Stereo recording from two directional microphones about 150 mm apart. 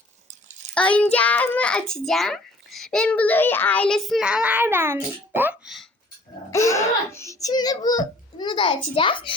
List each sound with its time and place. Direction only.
0.7 s a child's voice: 10° left (ahead or behind); by 5.5 s 15° right (ahead or behind)
6.5 s a child's voice: 20° left (ahead or behind); by 9.3 s 35° left (ahead or behind)